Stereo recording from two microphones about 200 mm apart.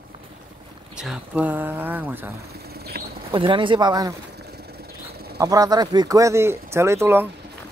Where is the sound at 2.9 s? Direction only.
50° right (ahead or behind).